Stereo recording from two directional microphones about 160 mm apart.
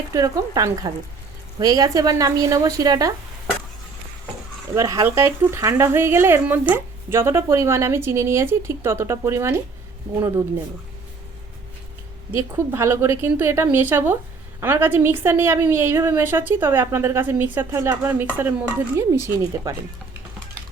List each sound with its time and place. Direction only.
0.1 s a woman's voice: 20° right (ahead or behind)
4.7 s a woman's voice: 20° right (ahead or behind)
12.4 s speech: 15° right (ahead or behind)